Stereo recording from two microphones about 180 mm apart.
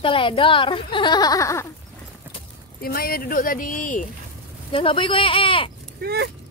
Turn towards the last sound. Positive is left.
turn(degrees=-65)  # may be behind; listen again after turning